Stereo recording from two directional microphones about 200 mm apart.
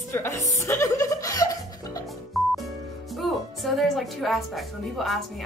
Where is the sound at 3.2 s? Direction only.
Centre (ahead or behind).